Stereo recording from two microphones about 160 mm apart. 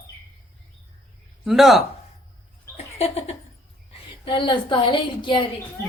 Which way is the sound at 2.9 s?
40° left (ahead or behind).